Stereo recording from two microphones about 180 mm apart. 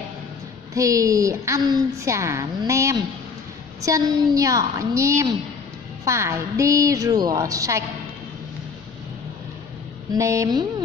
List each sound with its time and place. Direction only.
0.7 s a woman's voice: 20° right (ahead or behind)
10.1 s a woman's voice: 15° right (ahead or behind)